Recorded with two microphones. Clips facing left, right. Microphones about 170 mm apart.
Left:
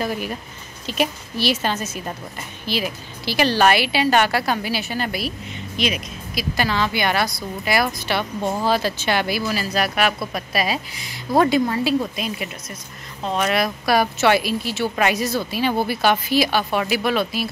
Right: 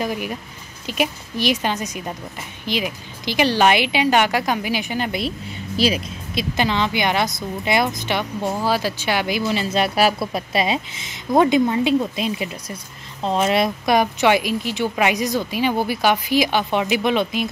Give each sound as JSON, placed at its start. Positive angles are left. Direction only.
{"t": 0.0, "sound": "speech", "side_deg": -15}
{"t": 5.8, "sound": "a woman's voice", "side_deg": -30}
{"t": 8.5, "sound": "speech", "side_deg": -5}
{"t": 9.5, "sound": "a woman's voice", "side_deg": -25}